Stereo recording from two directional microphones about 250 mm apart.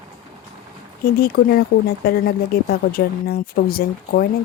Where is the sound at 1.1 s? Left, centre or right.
Left.